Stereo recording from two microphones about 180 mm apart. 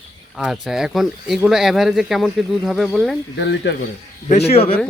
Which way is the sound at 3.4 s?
75° left (ahead or behind).